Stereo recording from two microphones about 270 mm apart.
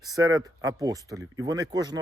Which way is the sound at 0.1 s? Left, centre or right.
Centre.